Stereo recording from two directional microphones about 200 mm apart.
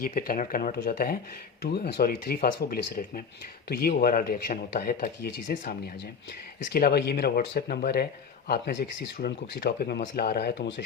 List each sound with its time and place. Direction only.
0.0 s speech: 45° left (ahead or behind)